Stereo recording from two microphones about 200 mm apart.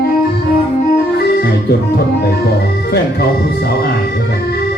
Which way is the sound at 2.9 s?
50° left (ahead or behind).